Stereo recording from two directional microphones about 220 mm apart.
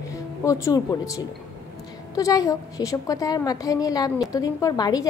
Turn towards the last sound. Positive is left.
turn(degrees=15)  # may be behind; listen again after turning